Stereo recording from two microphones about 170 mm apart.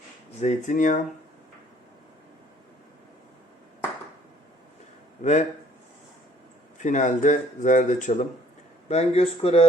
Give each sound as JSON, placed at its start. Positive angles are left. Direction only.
{"t": 0.3, "sound": "speech", "side_deg": 45}
{"t": 5.2, "sound": "speech", "side_deg": 40}
{"t": 6.7, "sound": "speech", "side_deg": 45}